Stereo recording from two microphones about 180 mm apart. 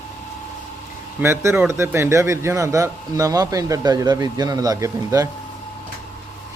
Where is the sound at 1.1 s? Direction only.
15° right (ahead or behind).